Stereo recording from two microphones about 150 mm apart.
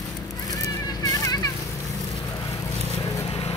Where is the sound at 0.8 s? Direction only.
25° left (ahead or behind).